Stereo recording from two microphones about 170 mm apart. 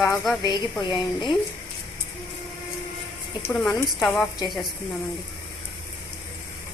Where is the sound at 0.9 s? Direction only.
25° left (ahead or behind).